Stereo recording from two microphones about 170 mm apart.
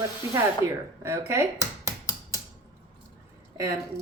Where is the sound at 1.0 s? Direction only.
15° right (ahead or behind).